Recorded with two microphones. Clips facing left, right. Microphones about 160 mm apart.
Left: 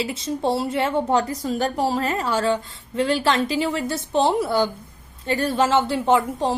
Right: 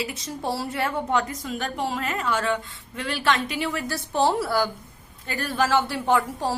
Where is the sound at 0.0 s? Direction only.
25° left (ahead or behind).